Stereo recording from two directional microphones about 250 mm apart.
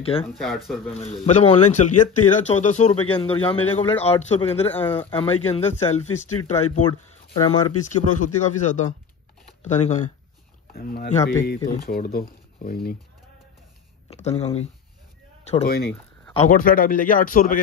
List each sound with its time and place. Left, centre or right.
0.0 s a man's voice: left
0.3 s speech: centre
0.9 s a man's voice: left
14.2 s a man's voice: left
15.6 s speech: left